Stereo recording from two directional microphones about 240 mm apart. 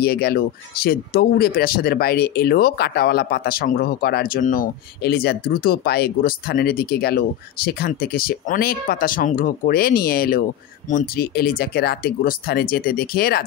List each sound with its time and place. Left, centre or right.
0.0 s speech: left